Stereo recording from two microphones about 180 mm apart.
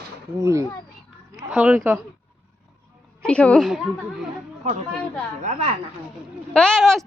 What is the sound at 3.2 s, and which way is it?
Speech, 5° left (ahead or behind).